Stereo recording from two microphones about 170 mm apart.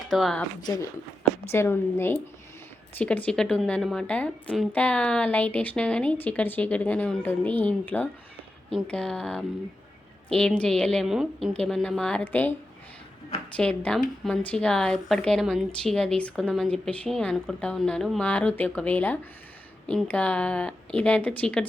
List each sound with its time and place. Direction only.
0.1 s speech: centre (ahead or behind)
0.6 s a woman's voice: 20° left (ahead or behind)
13.6 s a woman's voice: 5° left (ahead or behind)